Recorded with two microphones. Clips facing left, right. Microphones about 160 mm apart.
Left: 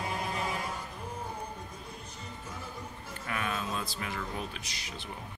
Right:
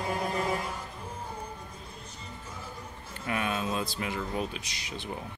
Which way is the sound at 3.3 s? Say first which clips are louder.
Right 4 dB; 20° right (ahead or behind).